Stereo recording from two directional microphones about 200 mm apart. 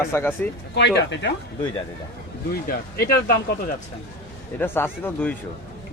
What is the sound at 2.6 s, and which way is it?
Speech, 45° left (ahead or behind).